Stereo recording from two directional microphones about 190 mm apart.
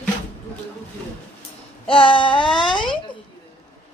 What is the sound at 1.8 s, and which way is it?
Speech, 30° left (ahead or behind).